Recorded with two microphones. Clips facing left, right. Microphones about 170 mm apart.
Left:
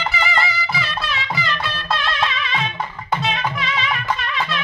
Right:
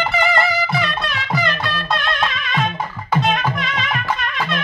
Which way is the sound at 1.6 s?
Centre (ahead or behind).